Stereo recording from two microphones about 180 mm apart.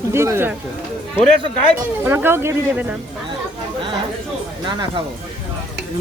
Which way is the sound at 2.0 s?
10° right (ahead or behind).